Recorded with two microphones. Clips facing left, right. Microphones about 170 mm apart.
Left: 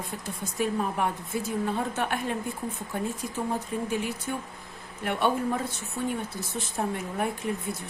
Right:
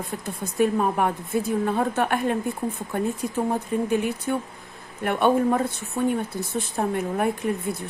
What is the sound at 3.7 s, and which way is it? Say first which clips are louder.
A woman's voice: right 6 dB; 55° right (ahead or behind).